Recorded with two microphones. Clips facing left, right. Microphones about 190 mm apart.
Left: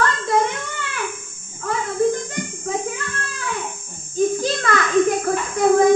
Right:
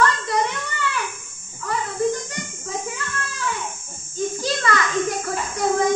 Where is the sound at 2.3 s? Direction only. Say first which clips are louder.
Left 5 dB; 50° left (ahead or behind).